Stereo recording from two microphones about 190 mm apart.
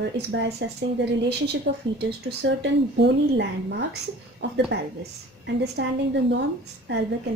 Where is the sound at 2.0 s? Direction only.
60° right (ahead or behind).